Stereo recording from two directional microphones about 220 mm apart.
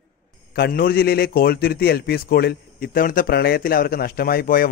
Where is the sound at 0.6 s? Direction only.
45° left (ahead or behind).